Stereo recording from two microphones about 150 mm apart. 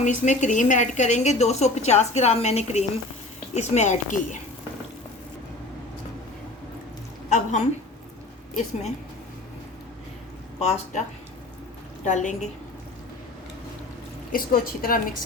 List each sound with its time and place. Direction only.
0.0 s a woman's voice: 55° left (ahead or behind)
7.3 s a sound: 50° left (ahead or behind)
10.6 s a woman's voice: 45° left (ahead or behind)
12.0 s a woman's voice: 55° left (ahead or behind)
14.3 s a woman's voice: 70° left (ahead or behind)